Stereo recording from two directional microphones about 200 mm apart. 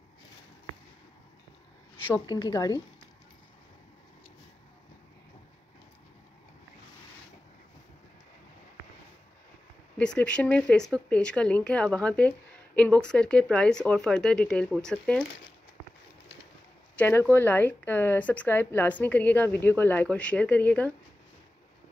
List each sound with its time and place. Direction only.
2.1 s speech: 20° left (ahead or behind)
9.9 s speech: 5° left (ahead or behind)
16.9 s a woman's voice: 10° left (ahead or behind)